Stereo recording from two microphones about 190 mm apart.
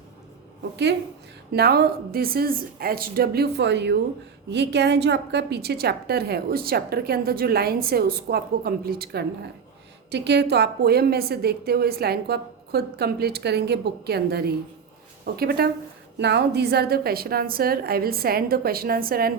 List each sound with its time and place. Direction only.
1.5 s a woman's voice: 55° right (ahead or behind)